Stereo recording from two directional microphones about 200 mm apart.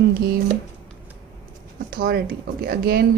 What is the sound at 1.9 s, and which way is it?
Speech, 50° right (ahead or behind).